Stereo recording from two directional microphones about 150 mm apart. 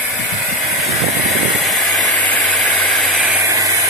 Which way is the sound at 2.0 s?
Centre (ahead or behind).